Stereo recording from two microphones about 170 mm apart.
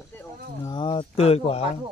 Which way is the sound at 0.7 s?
30° left (ahead or behind).